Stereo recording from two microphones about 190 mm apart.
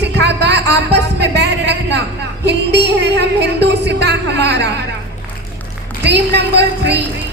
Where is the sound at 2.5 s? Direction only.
65° right (ahead or behind).